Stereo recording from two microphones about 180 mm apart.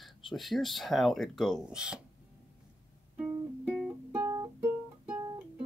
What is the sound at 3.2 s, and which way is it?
Music, 5° right (ahead or behind).